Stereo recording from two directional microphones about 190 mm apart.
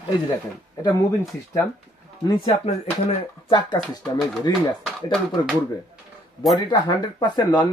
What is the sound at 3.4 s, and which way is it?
Speech, 25° left (ahead or behind).